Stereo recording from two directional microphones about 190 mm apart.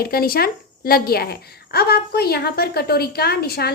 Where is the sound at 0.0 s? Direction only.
50° left (ahead or behind).